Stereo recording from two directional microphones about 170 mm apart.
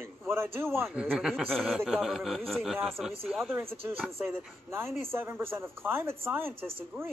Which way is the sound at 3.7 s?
35° right (ahead or behind).